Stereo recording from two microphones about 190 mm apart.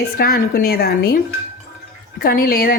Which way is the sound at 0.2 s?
50° left (ahead or behind).